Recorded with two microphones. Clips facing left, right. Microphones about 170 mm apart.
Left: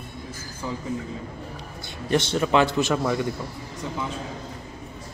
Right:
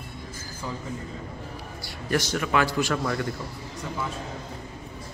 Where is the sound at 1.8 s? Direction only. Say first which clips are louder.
Left 3 dB; 20° left (ahead or behind).